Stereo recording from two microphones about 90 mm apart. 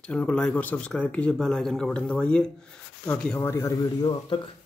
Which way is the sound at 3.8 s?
55° left (ahead or behind).